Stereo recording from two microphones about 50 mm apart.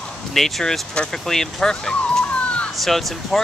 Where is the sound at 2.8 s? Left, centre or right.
Centre.